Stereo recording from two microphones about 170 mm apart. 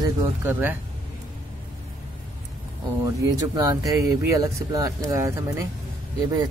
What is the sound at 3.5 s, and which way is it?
Speech, 20° right (ahead or behind).